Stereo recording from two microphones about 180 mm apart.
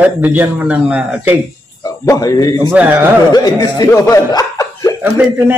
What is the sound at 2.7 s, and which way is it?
Speech, 10° right (ahead or behind).